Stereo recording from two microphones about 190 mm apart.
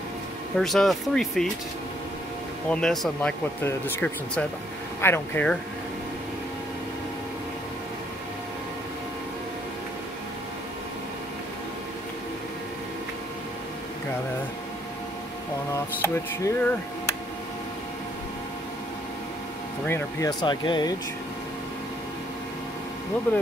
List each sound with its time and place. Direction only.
0.6 s speech: centre (ahead or behind)
2.7 s speech: 5° left (ahead or behind)
15.7 s speech: 15° left (ahead or behind)
19.9 s speech: 20° left (ahead or behind)